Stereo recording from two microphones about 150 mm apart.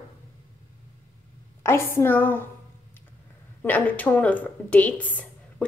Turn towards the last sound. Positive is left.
turn(degrees=10)  # may be behind; listen again after turning